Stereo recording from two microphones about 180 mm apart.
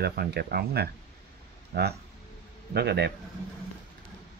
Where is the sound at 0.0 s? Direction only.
60° right (ahead or behind).